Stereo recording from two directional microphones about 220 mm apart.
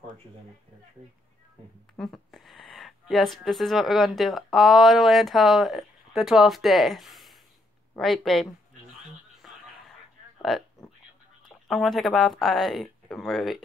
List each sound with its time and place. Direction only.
2.0 s speech: centre (ahead or behind)
9.4 s a sound: centre (ahead or behind)
10.5 s speech: centre (ahead or behind)